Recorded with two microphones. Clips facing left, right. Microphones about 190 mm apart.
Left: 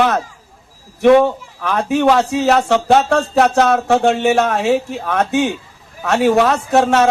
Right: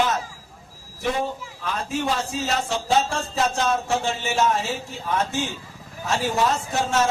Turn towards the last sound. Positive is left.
turn(degrees=65)  # may be behind; listen again after turning